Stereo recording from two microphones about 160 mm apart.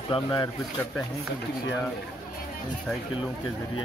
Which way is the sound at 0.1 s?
30° left (ahead or behind).